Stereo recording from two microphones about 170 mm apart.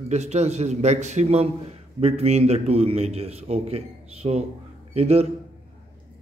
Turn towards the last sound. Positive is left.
turn(degrees=-35)  # may be behind; listen again after turning